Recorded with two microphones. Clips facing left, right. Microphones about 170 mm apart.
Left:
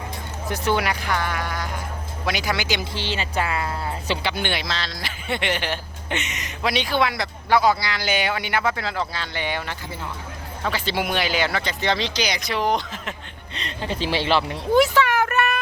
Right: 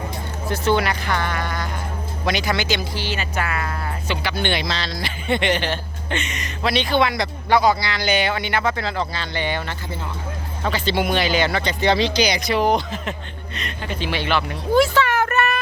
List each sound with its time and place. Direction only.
0.5 s a man's voice: 10° left (ahead or behind)
2.9 s speech: 25° left (ahead or behind)
4.4 s a man's voice: 5° left (ahead or behind)
13.8 s speech: 30° left (ahead or behind); by 15.6 s 10° left (ahead or behind)